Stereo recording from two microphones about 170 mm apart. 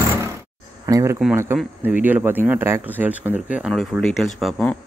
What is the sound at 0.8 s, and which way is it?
Speech, 20° right (ahead or behind).